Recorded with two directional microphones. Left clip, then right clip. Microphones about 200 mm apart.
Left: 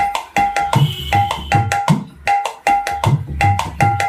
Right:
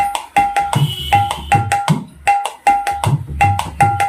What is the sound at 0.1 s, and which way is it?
Music, 10° right (ahead or behind).